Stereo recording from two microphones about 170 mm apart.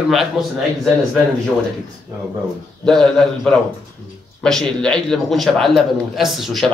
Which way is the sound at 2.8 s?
5° left (ahead or behind).